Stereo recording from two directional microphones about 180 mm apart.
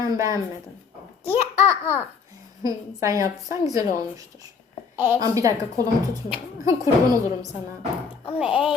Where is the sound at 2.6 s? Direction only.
20° right (ahead or behind).